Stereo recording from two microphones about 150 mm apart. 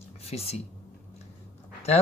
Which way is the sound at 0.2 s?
45° left (ahead or behind).